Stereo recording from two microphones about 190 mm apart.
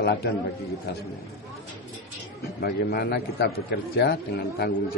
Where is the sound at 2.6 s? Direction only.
55° left (ahead or behind).